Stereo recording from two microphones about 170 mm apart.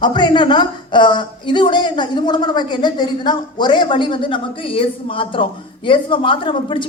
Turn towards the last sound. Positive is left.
turn(degrees=30)  # may be behind; listen again after turning